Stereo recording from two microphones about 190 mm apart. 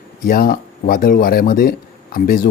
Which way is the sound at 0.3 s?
50° left (ahead or behind).